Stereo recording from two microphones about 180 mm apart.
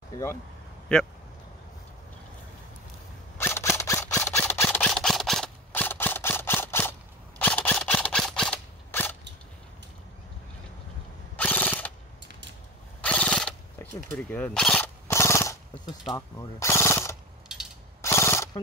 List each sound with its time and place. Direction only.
0.9 s speech: 5° left (ahead or behind)
3.3 s camera: 15° left (ahead or behind)
11.3 s ratchet: 10° left (ahead or behind)
12.3 s a sound: 75° right (ahead or behind)
13.0 s mechanisms: 5° left (ahead or behind)
14.1 s machine gun: 10° left (ahead or behind)
16.2 s speech: 15° left (ahead or behind)
17.5 s mechanisms: 5° right (ahead or behind)
18.0 s mechanisms: 15° left (ahead or behind)